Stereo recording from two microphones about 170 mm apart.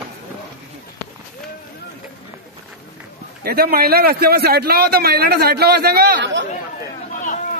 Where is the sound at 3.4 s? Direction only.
65° right (ahead or behind); by 6.4 s 90° right.